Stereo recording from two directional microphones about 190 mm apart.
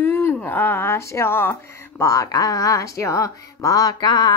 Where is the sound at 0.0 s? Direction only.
15° left (ahead or behind).